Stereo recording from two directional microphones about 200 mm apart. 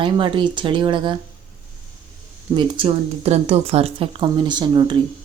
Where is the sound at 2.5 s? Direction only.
25° right (ahead or behind).